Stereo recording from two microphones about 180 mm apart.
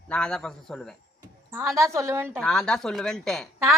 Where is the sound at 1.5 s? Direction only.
15° right (ahead or behind).